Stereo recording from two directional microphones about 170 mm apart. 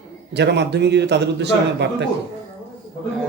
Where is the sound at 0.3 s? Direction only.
85° right.